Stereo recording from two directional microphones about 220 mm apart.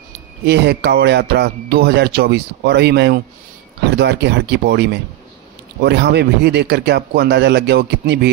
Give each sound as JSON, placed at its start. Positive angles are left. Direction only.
{"t": 0.5, "sound": "speech", "side_deg": -50}